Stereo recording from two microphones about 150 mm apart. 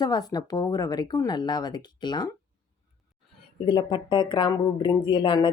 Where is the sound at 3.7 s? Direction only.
30° left (ahead or behind).